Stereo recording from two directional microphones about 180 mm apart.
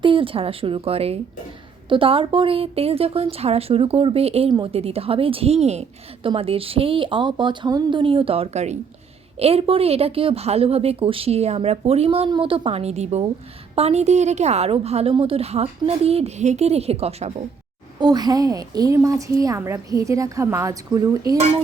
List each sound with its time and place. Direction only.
0.0 s a woman's voice: 30° right (ahead or behind)
18.0 s a woman's voice: 20° right (ahead or behind)
21.3 s a woman's voice: 35° right (ahead or behind)